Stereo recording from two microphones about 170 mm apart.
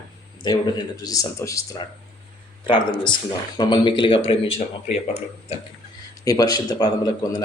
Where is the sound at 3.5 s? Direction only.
25° left (ahead or behind).